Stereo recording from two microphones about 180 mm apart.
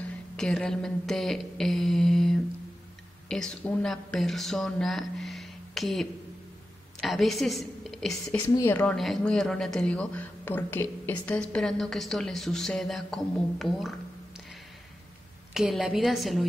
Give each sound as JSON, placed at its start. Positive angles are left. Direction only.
{"t": 0.0, "sound": "a woman's voice", "side_deg": 5}
{"t": 15.5, "sound": "speech", "side_deg": 0}